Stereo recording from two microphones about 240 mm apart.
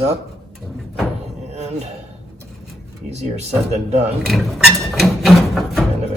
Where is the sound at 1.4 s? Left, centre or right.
Right.